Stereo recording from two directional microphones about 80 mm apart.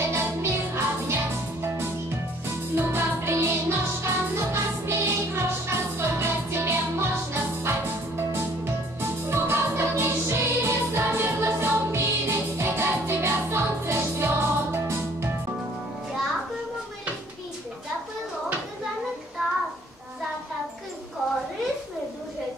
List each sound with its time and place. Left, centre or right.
0.1 s music: right
2.7 s music: right